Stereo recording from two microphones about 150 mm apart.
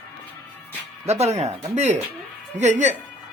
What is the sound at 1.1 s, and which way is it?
Speech, 45° right (ahead or behind).